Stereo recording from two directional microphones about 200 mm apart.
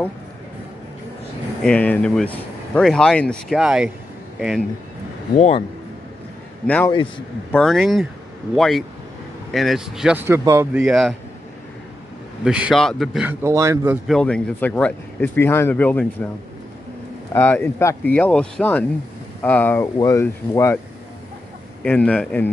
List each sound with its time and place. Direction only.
1.6 s speech: 5° left (ahead or behind)
6.9 s a man's voice: 25° left (ahead or behind)
7.5 s speech: centre (ahead or behind)
12.4 s speech: 5° right (ahead or behind)
14.0 s speech: 5° left (ahead or behind)
17.3 s speech: 10° left (ahead or behind)
21.8 s speech: 5° left (ahead or behind)